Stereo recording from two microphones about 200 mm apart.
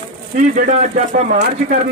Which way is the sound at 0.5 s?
40° right (ahead or behind).